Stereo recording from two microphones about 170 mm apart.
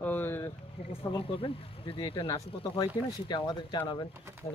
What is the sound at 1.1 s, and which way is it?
Speech, 30° left (ahead or behind).